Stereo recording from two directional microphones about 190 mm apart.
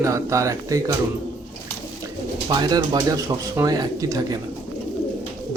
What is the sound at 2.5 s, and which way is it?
Speech, 20° right (ahead or behind).